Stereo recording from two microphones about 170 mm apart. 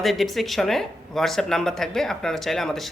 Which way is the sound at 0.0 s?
Centre (ahead or behind).